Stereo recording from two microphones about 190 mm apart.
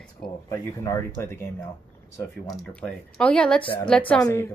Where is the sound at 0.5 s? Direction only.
15° left (ahead or behind).